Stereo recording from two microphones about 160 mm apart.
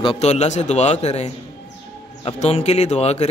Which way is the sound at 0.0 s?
40° left (ahead or behind).